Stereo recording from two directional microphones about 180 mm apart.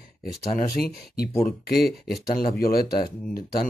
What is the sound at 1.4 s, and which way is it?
Speech, 60° left (ahead or behind).